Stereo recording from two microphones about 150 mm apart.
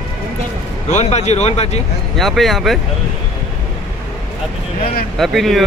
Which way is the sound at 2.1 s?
Centre (ahead or behind).